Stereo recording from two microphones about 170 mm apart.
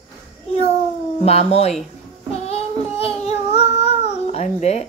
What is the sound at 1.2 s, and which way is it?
Speech, 40° left (ahead or behind).